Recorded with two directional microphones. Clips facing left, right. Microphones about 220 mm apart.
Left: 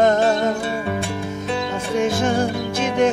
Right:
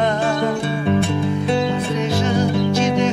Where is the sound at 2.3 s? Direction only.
55° left (ahead or behind).